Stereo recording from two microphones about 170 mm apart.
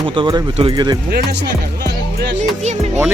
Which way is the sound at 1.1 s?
75° right (ahead or behind).